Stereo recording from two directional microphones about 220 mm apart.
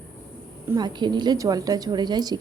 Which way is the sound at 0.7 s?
20° right (ahead or behind).